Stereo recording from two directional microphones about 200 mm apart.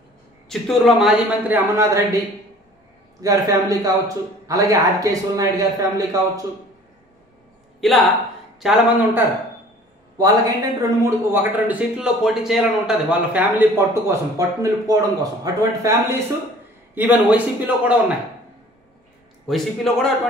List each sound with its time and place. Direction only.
0.5 s a man's voice: centre (ahead or behind)
1.8 s a man's voice: 15° right (ahead or behind)
7.8 s a man's voice: centre (ahead or behind)
10.1 s a man's voice: 20° right (ahead or behind)
11.3 s a man's voice: 5° right (ahead or behind)
19.4 s a man's voice: centre (ahead or behind)